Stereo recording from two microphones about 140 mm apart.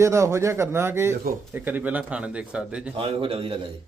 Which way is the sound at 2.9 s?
40° right (ahead or behind).